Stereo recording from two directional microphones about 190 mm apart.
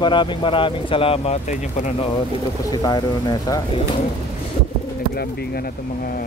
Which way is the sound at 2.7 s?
20° left (ahead or behind).